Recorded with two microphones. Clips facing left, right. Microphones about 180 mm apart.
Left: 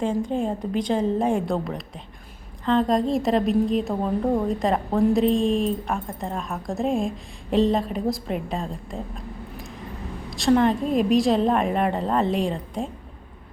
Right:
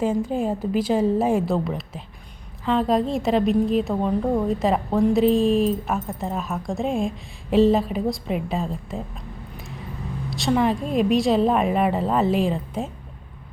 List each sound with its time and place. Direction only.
0.0 s a woman's voice: 5° right (ahead or behind)
10.2 s a woman's voice: centre (ahead or behind)